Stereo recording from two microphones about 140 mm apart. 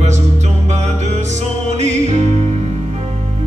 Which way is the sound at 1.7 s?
55° right (ahead or behind).